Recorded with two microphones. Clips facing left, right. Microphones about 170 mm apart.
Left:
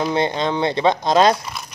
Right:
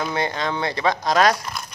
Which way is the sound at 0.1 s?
20° left (ahead or behind).